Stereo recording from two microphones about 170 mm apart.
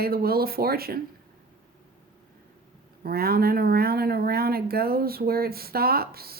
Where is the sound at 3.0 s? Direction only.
65° right (ahead or behind).